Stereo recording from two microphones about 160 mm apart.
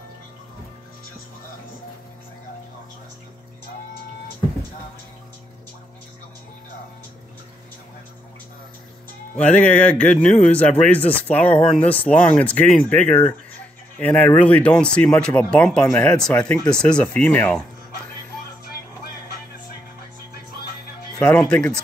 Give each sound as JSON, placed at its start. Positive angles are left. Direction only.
{"t": 9.4, "sound": "speech", "side_deg": 10}
{"t": 21.2, "sound": "speech", "side_deg": 10}